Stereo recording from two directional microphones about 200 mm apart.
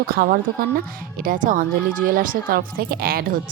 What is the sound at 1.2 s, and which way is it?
A woman's voice, 45° right (ahead or behind).